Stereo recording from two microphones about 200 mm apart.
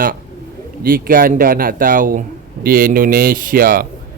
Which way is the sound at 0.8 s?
45° right (ahead or behind).